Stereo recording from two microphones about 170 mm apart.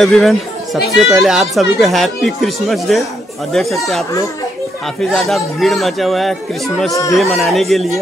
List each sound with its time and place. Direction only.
0.0 s speech: centre (ahead or behind)
5.1 s speech: centre (ahead or behind)
6.9 s speech: 20° left (ahead or behind)
7.2 s speech: centre (ahead or behind)